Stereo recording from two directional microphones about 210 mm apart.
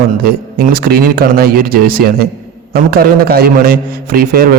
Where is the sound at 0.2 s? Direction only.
45° right (ahead or behind).